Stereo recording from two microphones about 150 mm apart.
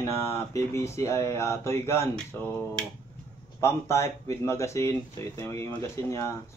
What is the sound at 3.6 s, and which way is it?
Speech, 20° left (ahead or behind).